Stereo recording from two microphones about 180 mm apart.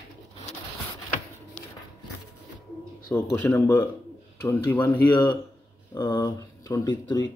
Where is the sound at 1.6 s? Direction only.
10° left (ahead or behind).